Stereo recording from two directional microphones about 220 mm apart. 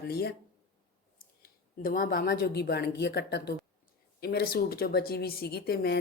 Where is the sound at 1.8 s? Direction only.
40° left (ahead or behind).